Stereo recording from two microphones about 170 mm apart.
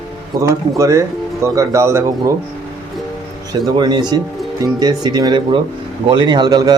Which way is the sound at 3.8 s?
25° right (ahead or behind).